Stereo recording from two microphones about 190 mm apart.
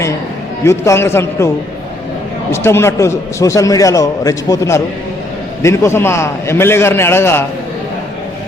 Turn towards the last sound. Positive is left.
turn(degrees=15)  # may be behind; listen again after turning